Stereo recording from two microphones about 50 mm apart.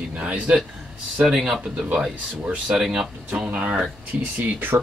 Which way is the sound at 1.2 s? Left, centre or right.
Centre.